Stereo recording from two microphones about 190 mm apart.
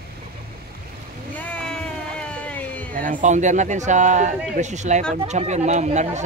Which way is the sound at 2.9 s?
45° right (ahead or behind).